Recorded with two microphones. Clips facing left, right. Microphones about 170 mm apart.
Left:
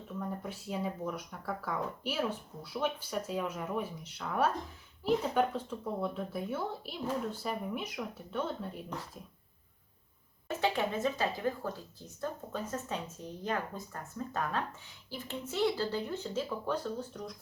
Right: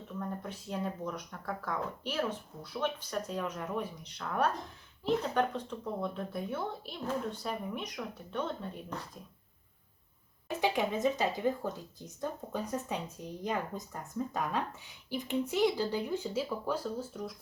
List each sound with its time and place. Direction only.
0.2 s speech: 5° left (ahead or behind)
10.6 s speech: 15° right (ahead or behind)